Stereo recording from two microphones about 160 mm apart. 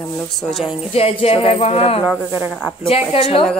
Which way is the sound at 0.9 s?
40° left (ahead or behind).